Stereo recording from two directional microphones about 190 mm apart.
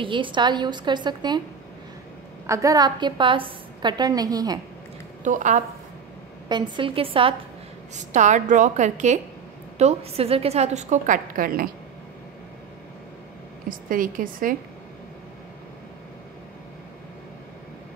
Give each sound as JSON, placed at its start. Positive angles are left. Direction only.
{"t": 0.0, "sound": "a woman's voice", "side_deg": -25}
{"t": 2.4, "sound": "a woman's voice", "side_deg": -15}
{"t": 5.2, "sound": "a woman's voice", "side_deg": -40}
{"t": 6.5, "sound": "a woman's voice", "side_deg": -25}
{"t": 7.9, "sound": "a woman's voice", "side_deg": -40}
{"t": 13.7, "sound": "a woman's voice", "side_deg": -45}